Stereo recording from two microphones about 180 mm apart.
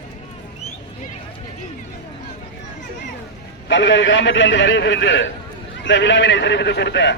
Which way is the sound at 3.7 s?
85° left.